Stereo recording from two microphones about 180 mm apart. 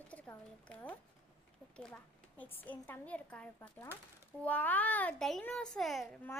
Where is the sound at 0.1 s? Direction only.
10° left (ahead or behind).